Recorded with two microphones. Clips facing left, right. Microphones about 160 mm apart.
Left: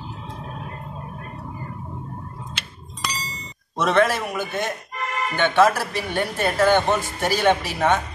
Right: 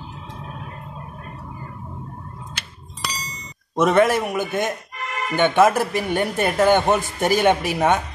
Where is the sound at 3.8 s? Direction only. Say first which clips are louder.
Right 3 dB; 15° right (ahead or behind).